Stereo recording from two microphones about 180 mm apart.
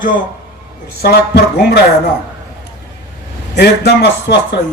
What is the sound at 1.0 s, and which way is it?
Speech, 65° left (ahead or behind).